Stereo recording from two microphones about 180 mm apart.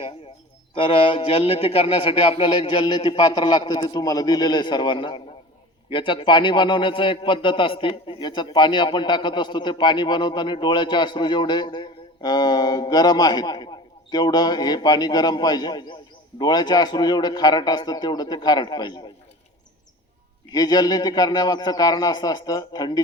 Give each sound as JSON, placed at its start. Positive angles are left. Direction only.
{"t": 0.8, "sound": "a man's voice", "side_deg": 30}
{"t": 20.5, "sound": "a man's voice", "side_deg": 20}